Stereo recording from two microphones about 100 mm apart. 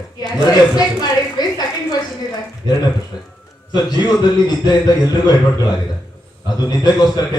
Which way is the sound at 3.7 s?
45° left (ahead or behind).